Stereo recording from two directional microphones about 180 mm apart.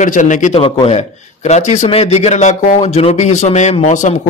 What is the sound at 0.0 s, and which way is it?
A man's voice, 45° left (ahead or behind).